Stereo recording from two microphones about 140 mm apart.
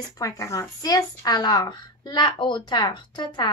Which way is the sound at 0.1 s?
25° left (ahead or behind).